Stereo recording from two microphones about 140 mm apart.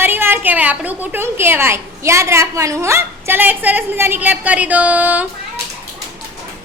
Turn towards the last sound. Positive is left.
turn(degrees=-10)  # may be behind; listen again after turning